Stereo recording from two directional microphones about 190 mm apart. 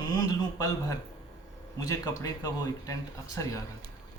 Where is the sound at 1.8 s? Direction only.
20° left (ahead or behind).